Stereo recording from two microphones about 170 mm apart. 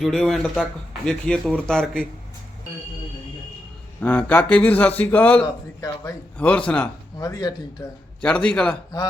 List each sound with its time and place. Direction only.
0.0 s speech: centre (ahead or behind)
4.0 s speech: 10° left (ahead or behind)
7.2 s speech: 20° left (ahead or behind)
8.2 s speech: 5° left (ahead or behind)